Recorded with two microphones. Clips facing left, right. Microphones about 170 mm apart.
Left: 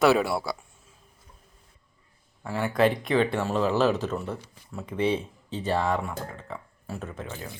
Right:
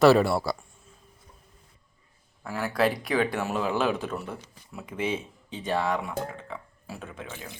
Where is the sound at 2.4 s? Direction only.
Centre (ahead or behind).